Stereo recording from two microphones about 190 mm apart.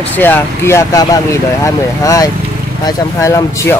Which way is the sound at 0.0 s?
10° left (ahead or behind).